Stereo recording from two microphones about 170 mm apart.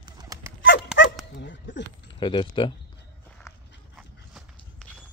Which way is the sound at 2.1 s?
30° left (ahead or behind).